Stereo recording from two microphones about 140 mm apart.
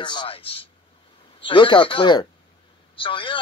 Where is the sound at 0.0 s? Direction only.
35° left (ahead or behind).